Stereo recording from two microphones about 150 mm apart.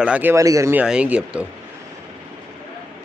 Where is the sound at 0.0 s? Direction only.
10° right (ahead or behind).